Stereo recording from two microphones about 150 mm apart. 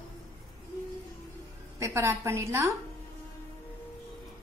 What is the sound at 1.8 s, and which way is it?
Speech, 20° right (ahead or behind).